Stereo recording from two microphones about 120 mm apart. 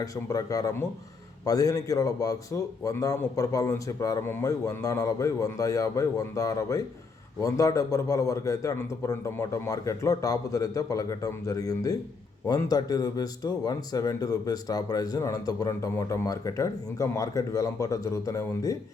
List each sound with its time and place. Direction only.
0.0 s a man's voice: 30° left (ahead or behind)